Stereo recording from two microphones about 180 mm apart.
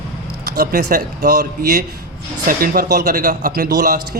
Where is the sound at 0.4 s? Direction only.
60° right (ahead or behind).